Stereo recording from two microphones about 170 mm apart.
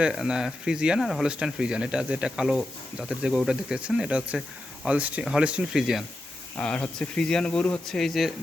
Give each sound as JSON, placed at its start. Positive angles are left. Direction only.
{"t": 0.0, "sound": "speech", "side_deg": -5}